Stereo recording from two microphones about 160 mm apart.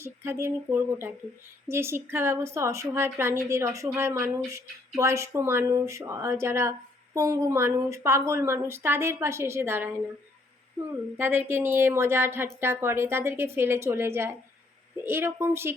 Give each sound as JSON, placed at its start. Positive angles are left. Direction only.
{"t": 0.0, "sound": "a woman's voice", "side_deg": -15}
{"t": 11.2, "sound": "a woman's voice", "side_deg": -15}